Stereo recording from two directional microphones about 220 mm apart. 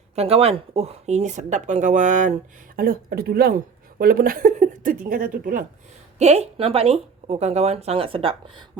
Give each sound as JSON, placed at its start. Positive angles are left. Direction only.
{"t": 0.2, "sound": "speech", "side_deg": -25}